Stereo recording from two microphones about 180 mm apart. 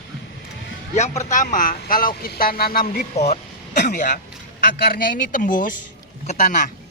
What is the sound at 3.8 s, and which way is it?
A man's voice, 45° left (ahead or behind).